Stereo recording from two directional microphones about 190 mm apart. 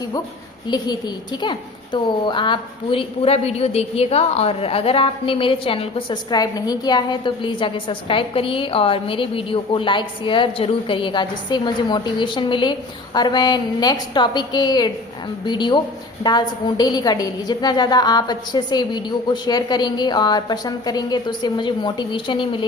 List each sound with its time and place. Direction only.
0.7 s a woman's voice: 20° left (ahead or behind)